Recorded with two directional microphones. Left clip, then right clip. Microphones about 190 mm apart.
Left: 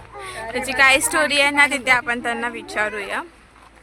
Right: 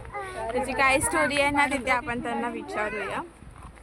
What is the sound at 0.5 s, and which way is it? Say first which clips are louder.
Speech: left 7 dB; 5° left (ahead or behind).